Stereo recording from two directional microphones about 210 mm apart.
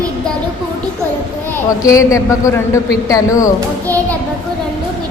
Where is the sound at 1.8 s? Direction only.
15° left (ahead or behind).